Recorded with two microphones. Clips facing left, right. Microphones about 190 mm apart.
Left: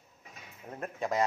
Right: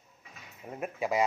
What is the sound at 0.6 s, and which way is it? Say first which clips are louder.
Speech: right 2 dB; 10° right (ahead or behind).